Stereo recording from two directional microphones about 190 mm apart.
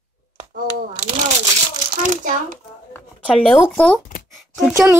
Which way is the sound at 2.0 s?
40° right (ahead or behind).